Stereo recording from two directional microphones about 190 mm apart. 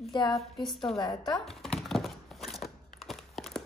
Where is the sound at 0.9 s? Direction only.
20° left (ahead or behind).